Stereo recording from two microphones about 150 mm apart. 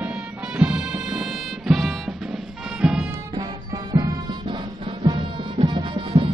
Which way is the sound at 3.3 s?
35° right (ahead or behind).